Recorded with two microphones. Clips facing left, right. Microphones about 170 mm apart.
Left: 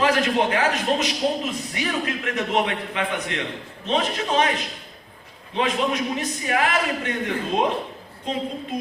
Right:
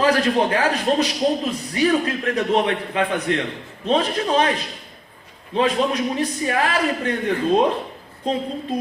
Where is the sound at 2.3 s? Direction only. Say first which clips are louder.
Right 3 dB; 35° right (ahead or behind).